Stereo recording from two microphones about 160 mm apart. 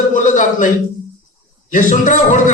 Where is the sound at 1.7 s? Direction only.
55° left (ahead or behind).